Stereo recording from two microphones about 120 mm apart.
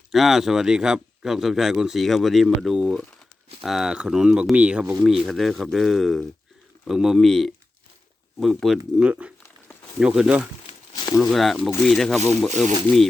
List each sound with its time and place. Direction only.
0.1 s speech: centre (ahead or behind)
10.9 s a sound: 35° left (ahead or behind)
11.2 s speech: centre (ahead or behind)